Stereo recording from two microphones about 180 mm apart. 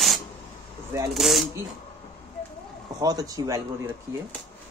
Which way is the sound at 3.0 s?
20° right (ahead or behind).